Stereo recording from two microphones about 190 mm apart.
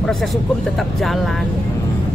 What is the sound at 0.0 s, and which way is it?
Speech, centre (ahead or behind).